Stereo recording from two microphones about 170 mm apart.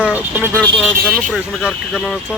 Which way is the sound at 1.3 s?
5° right (ahead or behind).